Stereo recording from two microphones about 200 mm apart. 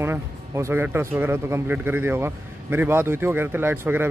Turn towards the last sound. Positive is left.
turn(degrees=-10)  # may be behind; listen again after turning